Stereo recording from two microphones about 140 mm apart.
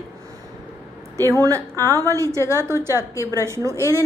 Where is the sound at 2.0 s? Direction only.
20° right (ahead or behind).